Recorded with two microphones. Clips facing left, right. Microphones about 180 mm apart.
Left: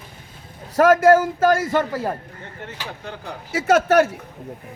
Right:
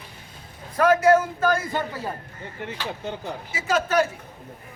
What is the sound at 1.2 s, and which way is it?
Speech, 90° left.